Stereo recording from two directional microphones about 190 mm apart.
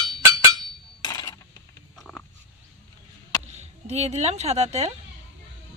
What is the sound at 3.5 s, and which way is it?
Speech, 35° right (ahead or behind).